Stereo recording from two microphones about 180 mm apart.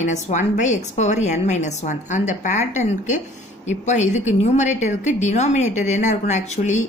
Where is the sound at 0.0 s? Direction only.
40° left (ahead or behind).